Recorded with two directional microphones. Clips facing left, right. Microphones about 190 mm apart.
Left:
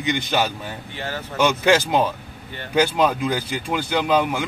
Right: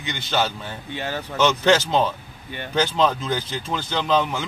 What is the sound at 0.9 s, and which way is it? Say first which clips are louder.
Speech: right 2 dB; 20° right (ahead or behind).